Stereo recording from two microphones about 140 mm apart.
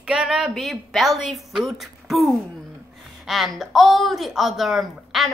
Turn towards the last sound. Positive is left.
turn(degrees=0)  # may be behind; listen again after turning